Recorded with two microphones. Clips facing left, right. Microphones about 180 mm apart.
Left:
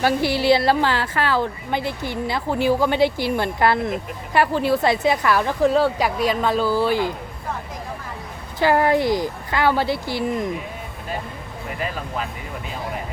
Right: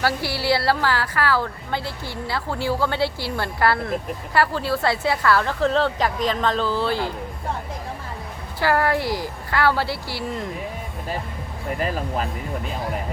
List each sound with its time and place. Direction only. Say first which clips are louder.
0.0 s a woman's voice: left 5 dB; 20° left (ahead or behind)
8.5 s a woman's voice: left 3 dB; 20° left (ahead or behind)
11.8 s speech: right 2 dB; 40° right (ahead or behind)